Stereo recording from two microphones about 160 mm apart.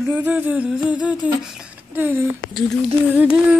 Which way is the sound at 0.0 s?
10° right (ahead or behind).